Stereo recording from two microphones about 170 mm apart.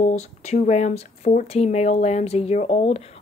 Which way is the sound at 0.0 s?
40° left (ahead or behind).